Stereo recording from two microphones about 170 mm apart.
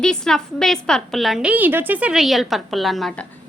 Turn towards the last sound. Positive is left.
turn(degrees=0)  # may be behind; listen again after turning